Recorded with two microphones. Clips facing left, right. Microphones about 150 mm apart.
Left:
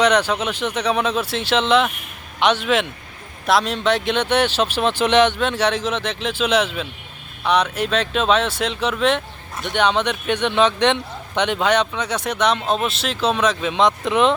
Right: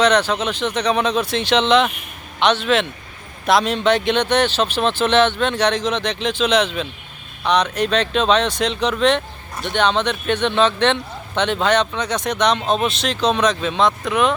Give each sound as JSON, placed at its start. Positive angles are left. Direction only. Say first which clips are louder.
{"t": 0.0, "sound": "speech", "louder": "right 1 dB", "side_deg": 10}